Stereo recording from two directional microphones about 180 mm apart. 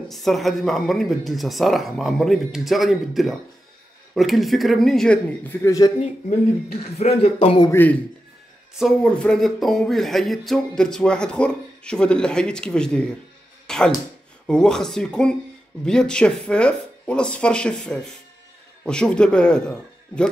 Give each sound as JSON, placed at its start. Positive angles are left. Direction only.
{"t": 0.1, "sound": "speech", "side_deg": 0}
{"t": 7.0, "sound": "speech", "side_deg": 35}
{"t": 8.7, "sound": "speech", "side_deg": 5}
{"t": 13.7, "sound": "a sound", "side_deg": 5}
{"t": 14.5, "sound": "speech", "side_deg": 5}